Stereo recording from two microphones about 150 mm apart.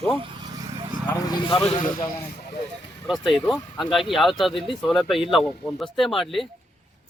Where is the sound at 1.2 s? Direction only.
30° left (ahead or behind).